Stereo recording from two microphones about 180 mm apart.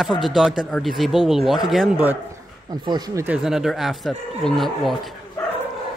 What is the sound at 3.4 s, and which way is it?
Speech, 5° right (ahead or behind).